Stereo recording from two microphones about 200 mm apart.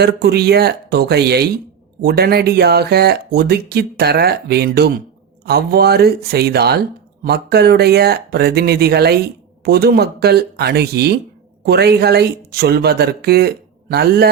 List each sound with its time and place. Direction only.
0.0 s speech: 55° right (ahead or behind)